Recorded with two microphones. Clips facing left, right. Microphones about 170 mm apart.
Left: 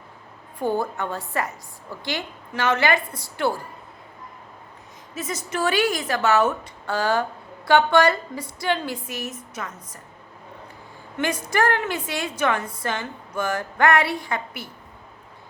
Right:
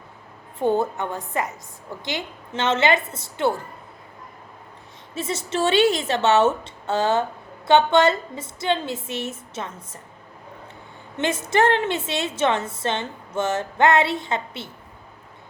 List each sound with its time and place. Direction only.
0.6 s a woman's voice: 20° right (ahead or behind)
5.1 s a woman's voice: 30° right (ahead or behind)
11.2 s a woman's voice: 25° right (ahead or behind)